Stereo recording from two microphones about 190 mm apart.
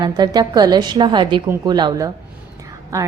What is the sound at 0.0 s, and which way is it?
A woman's voice, 20° right (ahead or behind).